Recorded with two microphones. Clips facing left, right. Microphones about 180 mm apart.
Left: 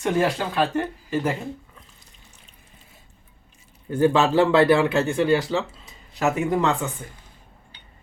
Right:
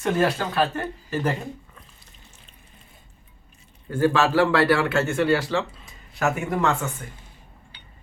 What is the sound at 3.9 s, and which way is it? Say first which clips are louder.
A man's voice: left 2 dB; 20° left (ahead or behind).